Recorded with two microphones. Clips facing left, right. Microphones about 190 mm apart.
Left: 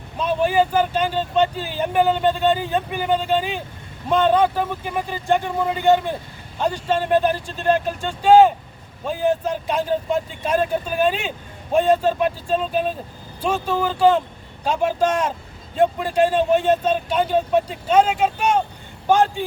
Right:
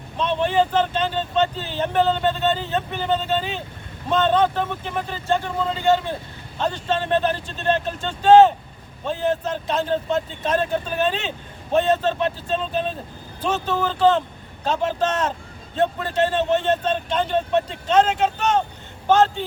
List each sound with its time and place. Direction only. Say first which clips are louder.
0.2 s speech: left 1 dB; 10° left (ahead or behind)